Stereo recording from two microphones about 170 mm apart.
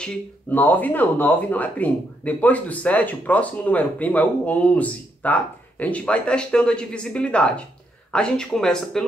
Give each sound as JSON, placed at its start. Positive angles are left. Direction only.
{"t": 0.0, "sound": "speech", "side_deg": 10}